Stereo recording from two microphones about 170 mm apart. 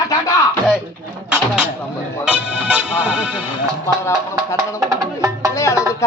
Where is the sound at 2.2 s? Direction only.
5° right (ahead or behind).